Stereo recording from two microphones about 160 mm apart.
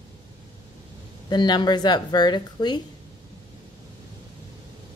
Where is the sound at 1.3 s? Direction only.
25° left (ahead or behind).